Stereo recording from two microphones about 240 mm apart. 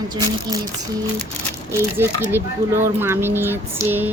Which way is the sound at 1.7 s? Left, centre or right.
Centre.